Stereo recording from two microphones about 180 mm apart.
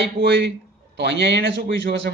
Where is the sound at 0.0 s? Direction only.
75° right (ahead or behind).